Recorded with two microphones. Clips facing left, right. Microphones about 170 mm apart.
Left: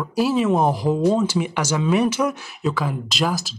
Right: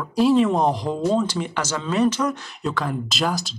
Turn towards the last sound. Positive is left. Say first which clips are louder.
# left 1 dB
turn(degrees=0)  # may be behind; listen again after turning